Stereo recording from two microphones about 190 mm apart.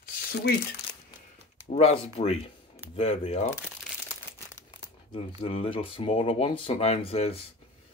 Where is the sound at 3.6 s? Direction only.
10° right (ahead or behind).